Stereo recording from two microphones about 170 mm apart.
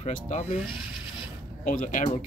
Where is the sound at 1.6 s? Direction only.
50° left (ahead or behind).